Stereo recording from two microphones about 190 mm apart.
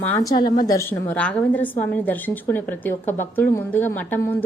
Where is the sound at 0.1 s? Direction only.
20° left (ahead or behind).